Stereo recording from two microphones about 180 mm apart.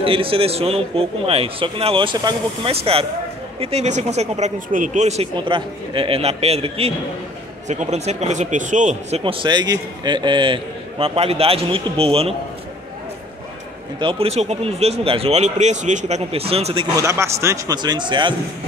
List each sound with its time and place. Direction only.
0.0 s speech: 30° right (ahead or behind)
9.2 s speech: 30° right (ahead or behind)
13.9 s speech: 30° right (ahead or behind)
16.9 s speech: 15° right (ahead or behind)